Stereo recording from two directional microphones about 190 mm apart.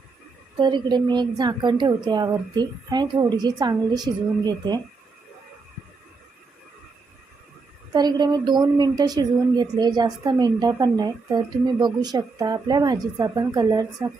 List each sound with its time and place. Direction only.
0.6 s a woman's voice: 25° right (ahead or behind)
7.9 s a woman's voice: 20° right (ahead or behind)